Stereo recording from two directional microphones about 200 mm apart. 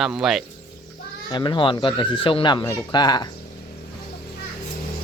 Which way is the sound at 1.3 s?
25° left (ahead or behind).